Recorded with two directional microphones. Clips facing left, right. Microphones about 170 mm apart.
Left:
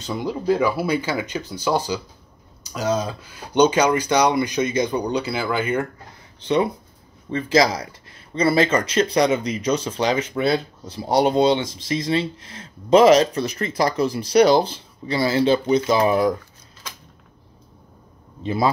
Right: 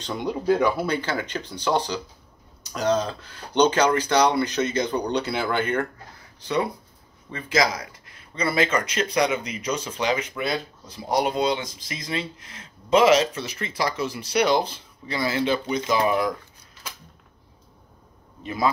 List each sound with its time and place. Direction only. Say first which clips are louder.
0.0 s speech: left 2 dB; centre (ahead or behind)
6.4 s speech: left 5 dB; 25° left (ahead or behind)
18.4 s a man's voice: left 4 dB; 30° left (ahead or behind)